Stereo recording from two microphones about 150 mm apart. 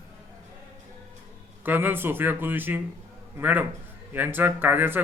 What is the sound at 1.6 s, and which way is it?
A man's voice, 15° right (ahead or behind).